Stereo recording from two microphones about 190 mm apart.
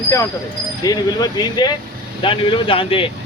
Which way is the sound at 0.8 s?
20° left (ahead or behind).